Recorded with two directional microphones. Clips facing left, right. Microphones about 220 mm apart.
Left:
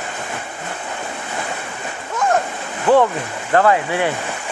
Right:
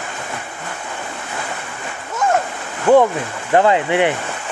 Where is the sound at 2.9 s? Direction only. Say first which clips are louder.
Right 2 dB; 15° right (ahead or behind).